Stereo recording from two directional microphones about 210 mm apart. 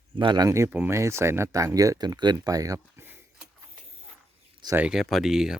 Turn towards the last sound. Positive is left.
turn(degrees=0)  # may be behind; listen again after turning